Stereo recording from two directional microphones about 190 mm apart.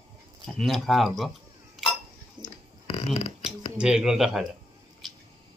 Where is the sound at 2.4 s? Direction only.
25° right (ahead or behind).